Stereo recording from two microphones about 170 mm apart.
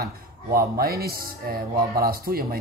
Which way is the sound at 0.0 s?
60° right (ahead or behind).